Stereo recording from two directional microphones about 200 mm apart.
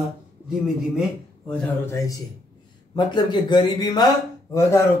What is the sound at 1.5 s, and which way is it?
Speech, 10° left (ahead or behind).